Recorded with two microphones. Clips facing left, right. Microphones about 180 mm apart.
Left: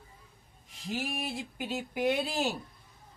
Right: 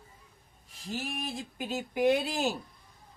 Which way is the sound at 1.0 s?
10° left (ahead or behind).